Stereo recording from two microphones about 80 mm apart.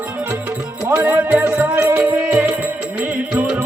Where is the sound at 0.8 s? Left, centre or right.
Right.